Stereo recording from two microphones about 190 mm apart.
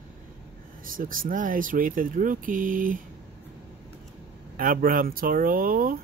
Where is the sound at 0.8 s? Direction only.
45° right (ahead or behind).